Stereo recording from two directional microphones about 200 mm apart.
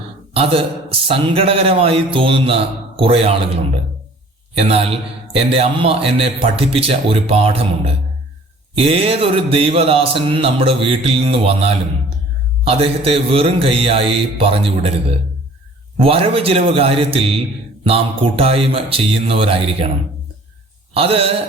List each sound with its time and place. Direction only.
0.3 s a man's voice: 30° right (ahead or behind)
4.5 s a man's voice: 30° right (ahead or behind)
16.0 s a man's voice: 30° right (ahead or behind)
20.9 s a man's voice: 30° right (ahead or behind)